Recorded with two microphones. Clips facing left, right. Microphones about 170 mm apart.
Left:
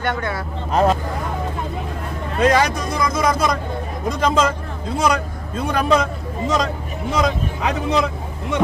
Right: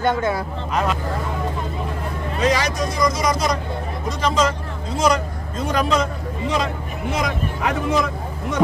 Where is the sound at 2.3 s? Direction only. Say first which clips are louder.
Left 4 dB; 55° left (ahead or behind).